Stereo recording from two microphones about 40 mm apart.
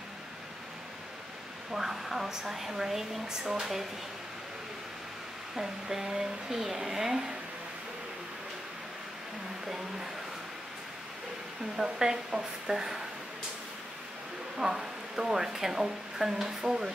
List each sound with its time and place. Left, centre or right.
1.7 s speech: centre
5.6 s speech: centre
11.7 s speech: centre
14.6 s speech: centre